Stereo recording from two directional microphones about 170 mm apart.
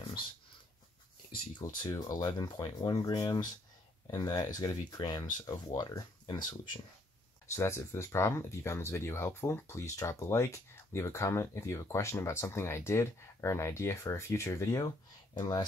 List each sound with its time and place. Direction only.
1.3 s speech: 30° left (ahead or behind)